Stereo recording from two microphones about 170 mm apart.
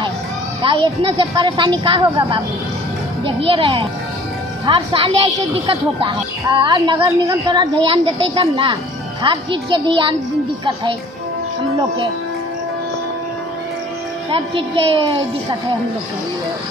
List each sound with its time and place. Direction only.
0.6 s a woman's voice: 30° right (ahead or behind)
14.3 s a woman's voice: 30° right (ahead or behind)